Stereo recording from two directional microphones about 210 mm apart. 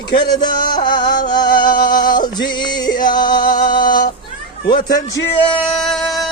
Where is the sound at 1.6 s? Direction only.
40° left (ahead or behind).